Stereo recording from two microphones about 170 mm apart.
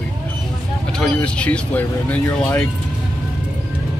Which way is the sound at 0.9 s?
5° left (ahead or behind).